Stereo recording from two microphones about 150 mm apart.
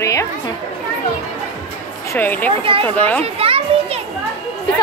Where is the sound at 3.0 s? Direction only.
10° left (ahead or behind).